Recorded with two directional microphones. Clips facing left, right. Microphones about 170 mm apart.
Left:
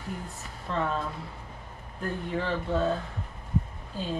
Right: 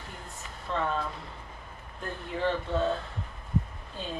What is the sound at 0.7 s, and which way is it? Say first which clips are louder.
Speech: left 1 dB; centre (ahead or behind).